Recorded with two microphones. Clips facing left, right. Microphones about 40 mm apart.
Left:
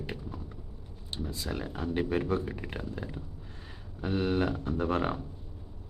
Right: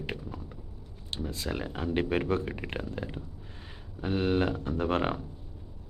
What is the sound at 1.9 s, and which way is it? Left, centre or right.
Speech, right.